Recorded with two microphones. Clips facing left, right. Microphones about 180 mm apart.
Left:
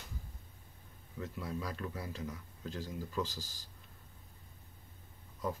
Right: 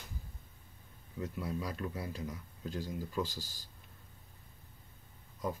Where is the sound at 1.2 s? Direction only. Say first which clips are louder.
Right 2 dB; 15° right (ahead or behind).